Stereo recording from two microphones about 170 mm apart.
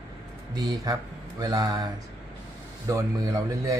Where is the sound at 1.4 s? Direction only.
25° right (ahead or behind).